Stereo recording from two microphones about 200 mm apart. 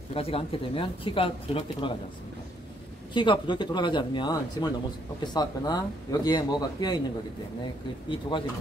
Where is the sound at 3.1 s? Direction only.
25° left (ahead or behind).